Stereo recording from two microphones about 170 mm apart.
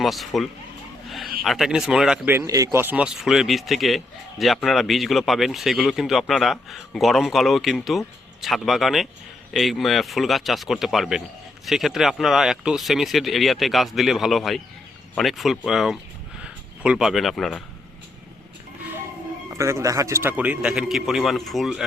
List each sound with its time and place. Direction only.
0.0 s a man's voice: centre (ahead or behind)
1.5 s a man's voice: centre (ahead or behind)
19.5 s a man's voice: 15° right (ahead or behind); by 21.8 s centre (ahead or behind)